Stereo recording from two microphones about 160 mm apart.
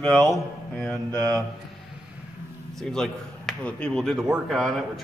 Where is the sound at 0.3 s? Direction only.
5° left (ahead or behind).